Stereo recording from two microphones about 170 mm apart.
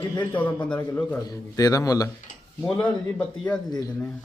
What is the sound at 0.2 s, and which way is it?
A man's voice, 10° left (ahead or behind).